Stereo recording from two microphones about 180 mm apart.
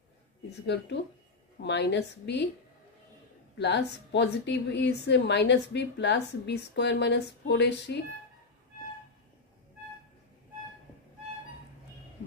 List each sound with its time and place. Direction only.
0.7 s a woman's voice: 65° left (ahead or behind)
3.5 s a woman's voice: 75° left (ahead or behind)